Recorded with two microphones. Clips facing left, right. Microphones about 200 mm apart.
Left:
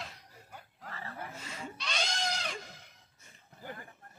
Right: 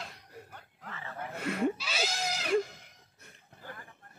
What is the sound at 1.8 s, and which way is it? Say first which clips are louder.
Goat: right 2 dB; 5° right (ahead or behind).